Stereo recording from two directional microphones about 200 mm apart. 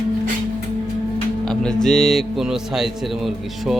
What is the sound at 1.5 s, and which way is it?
Speech, 5° left (ahead or behind).